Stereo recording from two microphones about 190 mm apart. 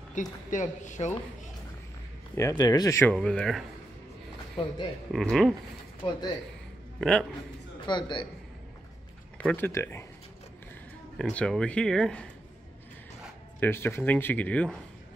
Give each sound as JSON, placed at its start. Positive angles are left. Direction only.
{"t": 0.1, "sound": "speech", "side_deg": 40}
{"t": 2.3, "sound": "speech", "side_deg": 20}
{"t": 3.2, "sound": "speech", "side_deg": 5}
{"t": 5.1, "sound": "speech", "side_deg": 0}
{"t": 6.0, "sound": "a man's voice", "side_deg": 25}
{"t": 7.0, "sound": "a man's voice", "side_deg": 5}
{"t": 7.8, "sound": "a man's voice", "side_deg": 25}
{"t": 9.4, "sound": "speech", "side_deg": 10}
{"t": 11.1, "sound": "speech", "side_deg": 5}
{"t": 13.6, "sound": "speech", "side_deg": 10}